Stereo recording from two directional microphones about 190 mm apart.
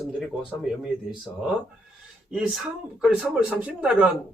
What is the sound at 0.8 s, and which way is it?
Speech, centre (ahead or behind).